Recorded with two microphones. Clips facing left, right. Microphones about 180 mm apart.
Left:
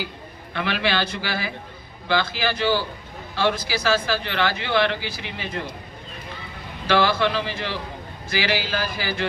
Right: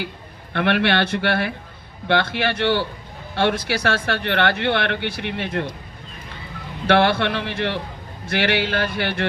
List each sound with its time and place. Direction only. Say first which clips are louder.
0.5 s a man's voice: right 5 dB; 65° right (ahead or behind)
6.8 s speech: right 3 dB; 65° right (ahead or behind)